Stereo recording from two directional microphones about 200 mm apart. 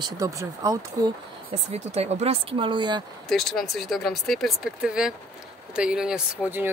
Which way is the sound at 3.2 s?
Centre (ahead or behind).